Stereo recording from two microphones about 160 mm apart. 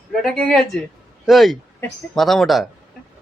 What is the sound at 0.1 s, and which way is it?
Speech, centre (ahead or behind).